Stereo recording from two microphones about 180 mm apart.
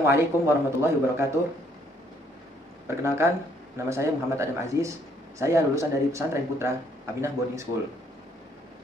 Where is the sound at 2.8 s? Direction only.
15° right (ahead or behind).